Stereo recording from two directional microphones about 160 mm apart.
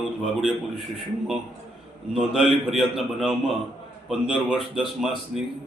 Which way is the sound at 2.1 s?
Centre (ahead or behind).